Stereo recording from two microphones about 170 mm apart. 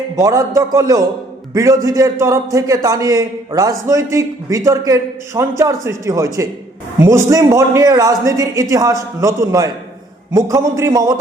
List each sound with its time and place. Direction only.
0.2 s a man's voice: 20° right (ahead or behind)